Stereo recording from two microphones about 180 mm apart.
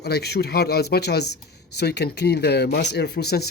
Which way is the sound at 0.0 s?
65° left (ahead or behind).